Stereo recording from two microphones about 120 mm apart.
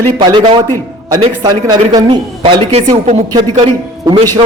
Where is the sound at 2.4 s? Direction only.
55° right (ahead or behind).